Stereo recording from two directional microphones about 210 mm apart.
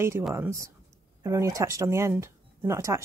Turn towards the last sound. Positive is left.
turn(degrees=-15)  # may be behind; listen again after turning